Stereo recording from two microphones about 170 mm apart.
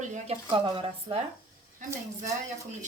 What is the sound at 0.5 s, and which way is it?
Speech, 30° right (ahead or behind).